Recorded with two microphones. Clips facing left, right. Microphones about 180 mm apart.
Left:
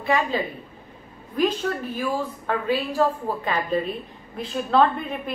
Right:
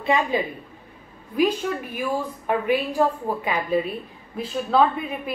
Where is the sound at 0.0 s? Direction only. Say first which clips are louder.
Right 1 dB; 20° right (ahead or behind).